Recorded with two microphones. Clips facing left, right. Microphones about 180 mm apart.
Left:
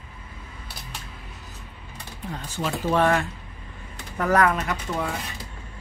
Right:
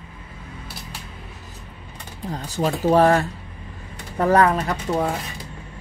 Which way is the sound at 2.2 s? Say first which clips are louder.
Right 6 dB; 35° right (ahead or behind).